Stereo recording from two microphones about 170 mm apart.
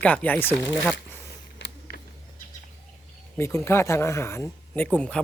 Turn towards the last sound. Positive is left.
turn(degrees=5)  # may be behind; listen again after turning